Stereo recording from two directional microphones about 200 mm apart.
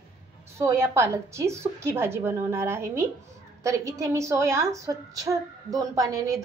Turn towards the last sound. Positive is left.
turn(degrees=-15)  # may be behind; listen again after turning